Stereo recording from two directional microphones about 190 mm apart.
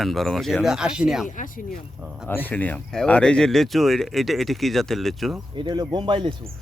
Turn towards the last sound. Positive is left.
turn(degrees=-25)  # may be behind; listen again after turning